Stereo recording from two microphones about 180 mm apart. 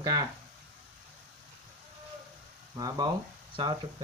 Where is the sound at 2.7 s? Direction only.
20° right (ahead or behind).